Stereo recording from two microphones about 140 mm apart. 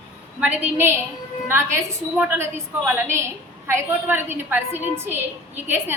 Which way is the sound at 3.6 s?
15° right (ahead or behind).